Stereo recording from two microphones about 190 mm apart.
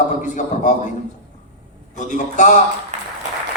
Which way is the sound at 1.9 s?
40° left (ahead or behind).